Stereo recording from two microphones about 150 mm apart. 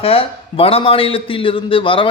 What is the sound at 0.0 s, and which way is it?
A man's voice, 40° left (ahead or behind).